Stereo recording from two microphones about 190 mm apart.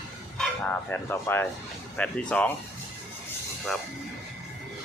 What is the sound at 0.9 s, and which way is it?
Speech, 10° left (ahead or behind).